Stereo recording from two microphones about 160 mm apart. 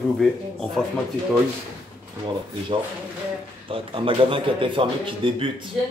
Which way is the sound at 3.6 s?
35° right (ahead or behind).